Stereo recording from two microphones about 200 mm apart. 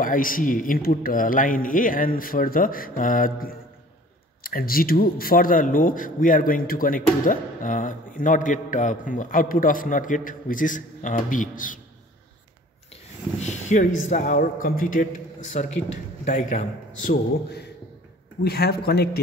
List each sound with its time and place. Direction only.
0.0 s speech: 45° left (ahead or behind)
13.4 s a man's voice: 35° left (ahead or behind); by 19.2 s 55° left (ahead or behind)